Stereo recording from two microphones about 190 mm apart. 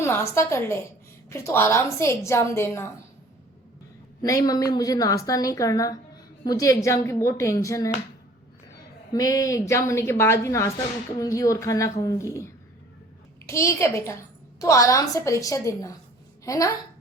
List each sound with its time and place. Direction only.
0.0 s a woman's voice: 15° left (ahead or behind)
4.2 s a woman's voice: 20° left (ahead or behind)
9.1 s a woman's voice: 20° left (ahead or behind)
13.5 s a woman's voice: 15° left (ahead or behind)